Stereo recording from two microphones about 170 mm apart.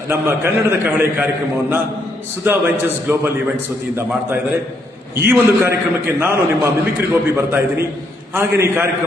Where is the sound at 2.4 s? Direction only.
10° right (ahead or behind).